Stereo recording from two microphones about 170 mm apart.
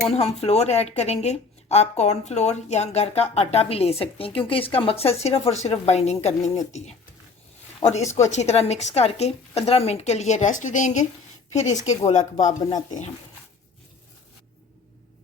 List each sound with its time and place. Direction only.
0.1 s speech: 40° left (ahead or behind)